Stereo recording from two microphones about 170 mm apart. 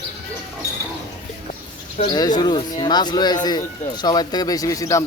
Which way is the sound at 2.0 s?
25° left (ahead or behind).